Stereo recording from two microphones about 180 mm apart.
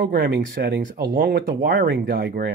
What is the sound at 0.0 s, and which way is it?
Speech, 55° right (ahead or behind).